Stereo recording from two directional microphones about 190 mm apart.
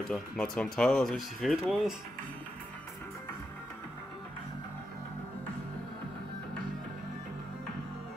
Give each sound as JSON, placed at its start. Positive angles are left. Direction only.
{"t": 0.1, "sound": "speech", "side_deg": 5}